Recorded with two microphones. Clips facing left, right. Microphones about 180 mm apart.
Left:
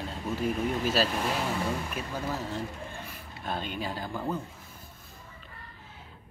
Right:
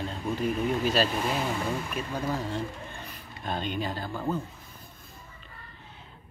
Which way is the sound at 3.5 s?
5° left (ahead or behind).